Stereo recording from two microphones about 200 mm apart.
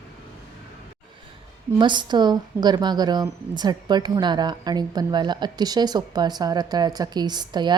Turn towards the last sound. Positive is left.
turn(degrees=-20)  # may be behind; listen again after turning